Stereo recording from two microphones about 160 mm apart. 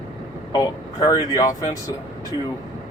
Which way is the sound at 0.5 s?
20° left (ahead or behind).